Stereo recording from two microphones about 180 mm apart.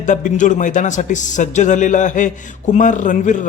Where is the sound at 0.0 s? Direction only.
45° left (ahead or behind).